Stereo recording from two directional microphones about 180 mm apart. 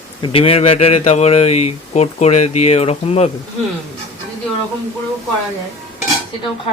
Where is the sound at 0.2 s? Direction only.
30° left (ahead or behind).